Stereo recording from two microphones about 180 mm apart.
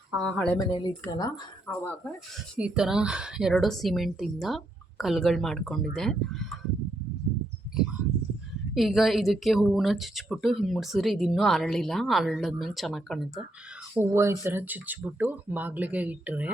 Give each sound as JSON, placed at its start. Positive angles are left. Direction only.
{"t": 0.1, "sound": "speech", "side_deg": 5}
{"t": 0.6, "sound": "speech", "side_deg": 25}
{"t": 1.6, "sound": "speech", "side_deg": 10}
{"t": 2.6, "sound": "speech", "side_deg": -5}
{"t": 8.7, "sound": "speech", "side_deg": 0}
{"t": 14.0, "sound": "speech", "side_deg": -15}